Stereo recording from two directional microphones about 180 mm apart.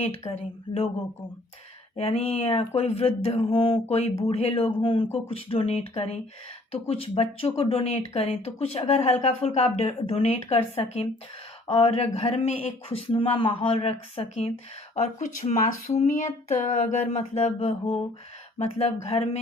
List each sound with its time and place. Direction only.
0.3 s speech: 30° left (ahead or behind)
2.0 s speech: 35° left (ahead or behind)